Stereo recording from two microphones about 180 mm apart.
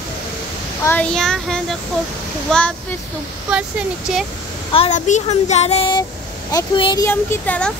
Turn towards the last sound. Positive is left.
turn(degrees=10)  # may be behind; listen again after turning